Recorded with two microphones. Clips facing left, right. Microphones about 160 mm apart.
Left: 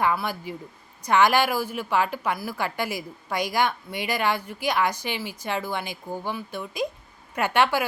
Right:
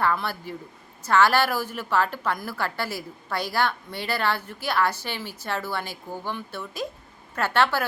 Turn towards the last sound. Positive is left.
turn(degrees=15)  # may be behind; listen again after turning